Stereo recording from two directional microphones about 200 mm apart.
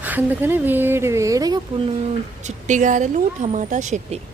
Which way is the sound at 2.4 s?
40° right (ahead or behind).